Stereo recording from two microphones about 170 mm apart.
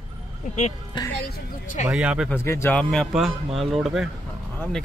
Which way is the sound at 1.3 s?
50° left (ahead or behind).